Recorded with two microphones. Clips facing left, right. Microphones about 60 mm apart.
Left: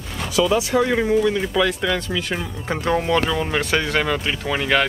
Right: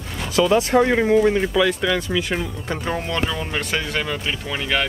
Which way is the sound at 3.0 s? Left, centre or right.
Left.